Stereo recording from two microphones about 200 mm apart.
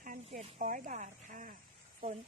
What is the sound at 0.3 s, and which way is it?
Speech, 35° right (ahead or behind).